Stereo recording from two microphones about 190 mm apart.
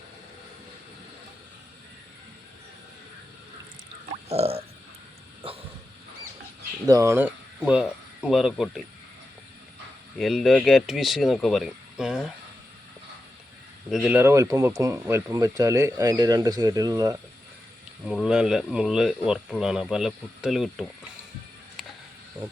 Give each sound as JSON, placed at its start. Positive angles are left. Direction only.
{"t": 4.3, "sound": "a sound", "side_deg": -30}
{"t": 6.8, "sound": "speech", "side_deg": -15}
{"t": 10.2, "sound": "speech", "side_deg": 0}
{"t": 13.9, "sound": "speech", "side_deg": -5}
{"t": 18.0, "sound": "speech", "side_deg": 0}